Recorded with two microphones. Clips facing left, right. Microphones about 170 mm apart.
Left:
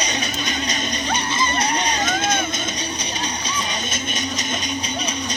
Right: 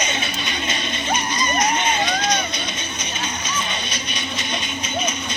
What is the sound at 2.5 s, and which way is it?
Music, 35° left (ahead or behind).